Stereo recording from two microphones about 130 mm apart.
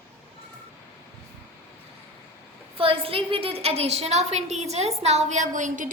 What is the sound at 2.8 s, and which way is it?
A woman's voice, 45° right (ahead or behind).